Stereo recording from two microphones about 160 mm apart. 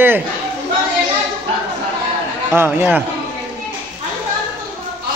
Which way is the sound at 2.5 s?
15° right (ahead or behind).